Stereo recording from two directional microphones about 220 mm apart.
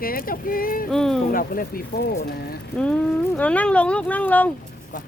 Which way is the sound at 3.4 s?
5° left (ahead or behind).